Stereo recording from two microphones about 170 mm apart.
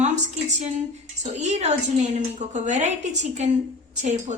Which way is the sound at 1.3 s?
40° right (ahead or behind).